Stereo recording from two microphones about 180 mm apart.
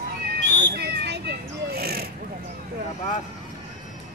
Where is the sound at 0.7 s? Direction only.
70° right (ahead or behind).